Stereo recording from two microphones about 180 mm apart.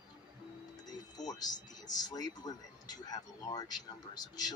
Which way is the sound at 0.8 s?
20° left (ahead or behind).